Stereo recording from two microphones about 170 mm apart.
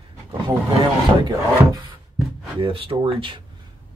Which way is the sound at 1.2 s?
25° right (ahead or behind).